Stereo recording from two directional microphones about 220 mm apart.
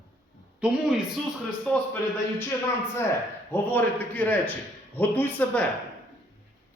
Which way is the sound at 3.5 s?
10° left (ahead or behind).